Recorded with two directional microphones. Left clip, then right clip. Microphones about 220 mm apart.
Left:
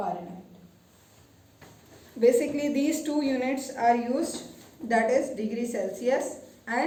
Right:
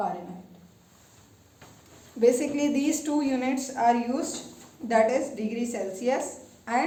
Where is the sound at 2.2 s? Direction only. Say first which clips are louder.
Even; 30° right (ahead or behind).